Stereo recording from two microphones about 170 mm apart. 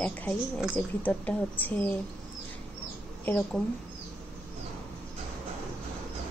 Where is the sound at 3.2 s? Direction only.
10° left (ahead or behind).